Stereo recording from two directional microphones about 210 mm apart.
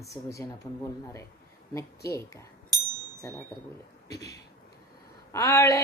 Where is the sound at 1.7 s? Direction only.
15° left (ahead or behind).